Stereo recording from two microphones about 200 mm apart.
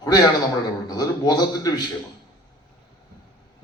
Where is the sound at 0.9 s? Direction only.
20° left (ahead or behind).